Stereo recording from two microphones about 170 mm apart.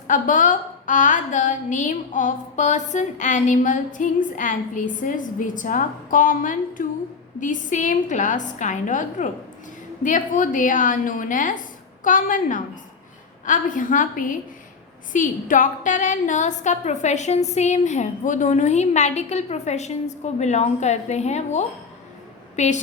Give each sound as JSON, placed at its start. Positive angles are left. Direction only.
{"t": 0.1, "sound": "a woman's voice", "side_deg": 50}